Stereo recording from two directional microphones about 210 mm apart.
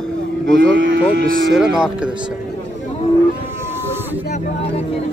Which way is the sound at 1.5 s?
5° right (ahead or behind).